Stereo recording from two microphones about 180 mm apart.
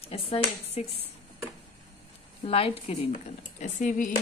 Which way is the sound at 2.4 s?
30° left (ahead or behind).